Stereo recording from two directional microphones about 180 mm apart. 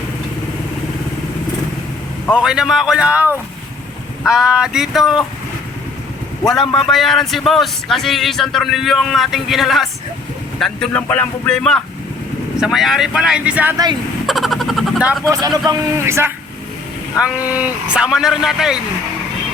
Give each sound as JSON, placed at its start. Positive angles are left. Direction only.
{"t": 2.3, "sound": "speech", "side_deg": -5}
{"t": 6.5, "sound": "speech", "side_deg": 0}
{"t": 14.3, "sound": "a sound", "side_deg": 0}
{"t": 15.2, "sound": "a man's voice", "side_deg": -20}